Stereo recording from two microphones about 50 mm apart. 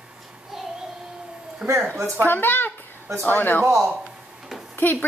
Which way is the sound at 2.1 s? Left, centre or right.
Left.